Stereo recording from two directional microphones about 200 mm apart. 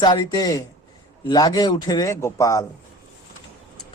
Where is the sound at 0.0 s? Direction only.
20° left (ahead or behind).